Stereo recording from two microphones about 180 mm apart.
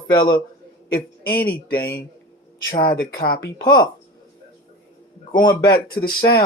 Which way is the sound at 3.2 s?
65° left (ahead or behind).